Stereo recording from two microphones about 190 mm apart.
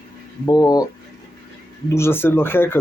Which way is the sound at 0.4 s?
20° left (ahead or behind).